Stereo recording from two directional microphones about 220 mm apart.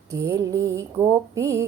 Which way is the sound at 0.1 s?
15° right (ahead or behind).